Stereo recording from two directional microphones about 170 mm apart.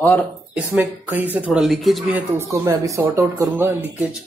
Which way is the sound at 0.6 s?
10° right (ahead or behind).